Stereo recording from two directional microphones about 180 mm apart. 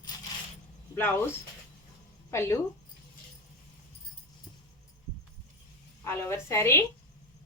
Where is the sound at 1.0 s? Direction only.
15° left (ahead or behind).